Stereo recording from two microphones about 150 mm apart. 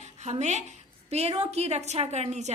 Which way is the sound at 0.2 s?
50° right (ahead or behind).